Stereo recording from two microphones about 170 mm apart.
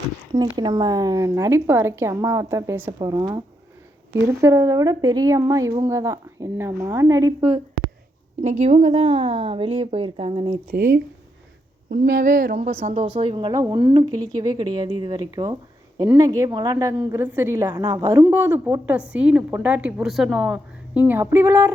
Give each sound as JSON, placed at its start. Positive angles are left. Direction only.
{"t": 0.5, "sound": "a woman's voice", "side_deg": -25}
{"t": 8.4, "sound": "a woman's voice", "side_deg": -45}
{"t": 10.7, "sound": "speech", "side_deg": -60}
{"t": 12.8, "sound": "a woman's voice", "side_deg": -40}